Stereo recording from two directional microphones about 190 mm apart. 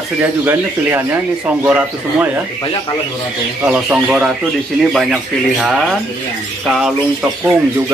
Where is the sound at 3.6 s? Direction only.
5° right (ahead or behind).